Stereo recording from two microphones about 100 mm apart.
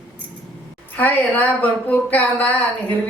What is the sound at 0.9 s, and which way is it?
Speech, 15° left (ahead or behind).